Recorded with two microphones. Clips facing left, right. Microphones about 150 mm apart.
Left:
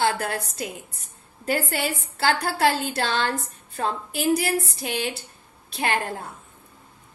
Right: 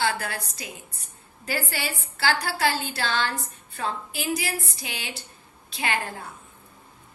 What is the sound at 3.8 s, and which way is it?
A woman's voice, 55° left (ahead or behind).